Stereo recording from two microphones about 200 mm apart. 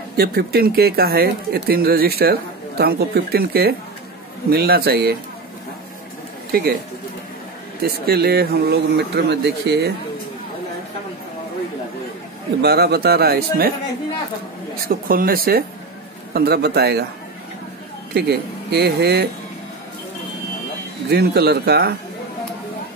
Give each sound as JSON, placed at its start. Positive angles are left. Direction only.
{"t": 0.2, "sound": "speech", "side_deg": -50}
{"t": 7.8, "sound": "speech", "side_deg": -55}
{"t": 12.6, "sound": "speech", "side_deg": -55}
{"t": 14.9, "sound": "speech", "side_deg": -45}
{"t": 18.1, "sound": "speech", "side_deg": -55}
{"t": 21.1, "sound": "speech", "side_deg": -55}